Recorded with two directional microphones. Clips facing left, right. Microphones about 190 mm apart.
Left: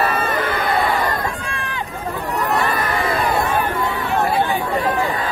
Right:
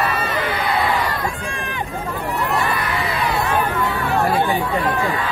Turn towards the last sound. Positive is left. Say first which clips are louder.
# left 3 dB
turn(degrees=50)  # may be behind; listen again after turning